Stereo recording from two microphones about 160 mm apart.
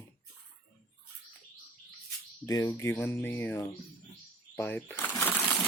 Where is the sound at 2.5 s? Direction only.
20° left (ahead or behind).